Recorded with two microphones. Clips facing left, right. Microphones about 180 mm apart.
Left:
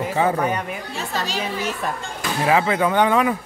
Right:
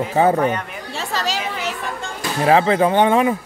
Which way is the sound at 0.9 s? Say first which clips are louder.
Right 4 dB; 90° right.